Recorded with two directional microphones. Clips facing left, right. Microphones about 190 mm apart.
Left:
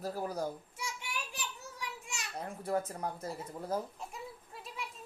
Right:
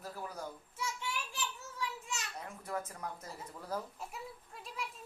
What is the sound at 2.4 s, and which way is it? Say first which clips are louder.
Speech: left 9 dB; 35° left (ahead or behind).